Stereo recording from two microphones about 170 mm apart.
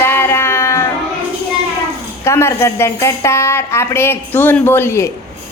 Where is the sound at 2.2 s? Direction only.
15° left (ahead or behind).